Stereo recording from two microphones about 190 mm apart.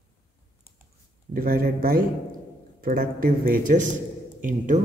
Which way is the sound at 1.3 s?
50° right (ahead or behind).